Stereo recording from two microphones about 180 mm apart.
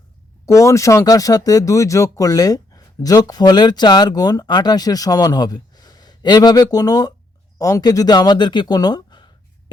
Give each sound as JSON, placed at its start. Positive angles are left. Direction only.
{"t": 0.4, "sound": "speech", "side_deg": 15}